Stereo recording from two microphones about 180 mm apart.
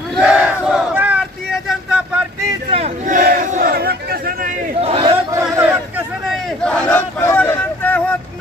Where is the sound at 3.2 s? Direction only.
55° right (ahead or behind).